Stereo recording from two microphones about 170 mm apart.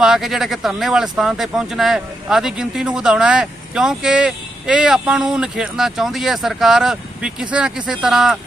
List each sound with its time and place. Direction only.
0.0 s speech: centre (ahead or behind)